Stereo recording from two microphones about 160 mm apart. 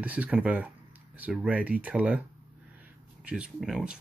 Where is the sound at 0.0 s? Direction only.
10° right (ahead or behind).